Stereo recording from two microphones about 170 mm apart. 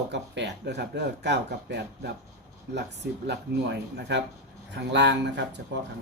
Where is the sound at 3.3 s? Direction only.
85° right.